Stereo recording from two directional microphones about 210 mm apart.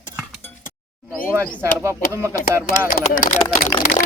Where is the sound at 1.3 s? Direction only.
10° right (ahead or behind).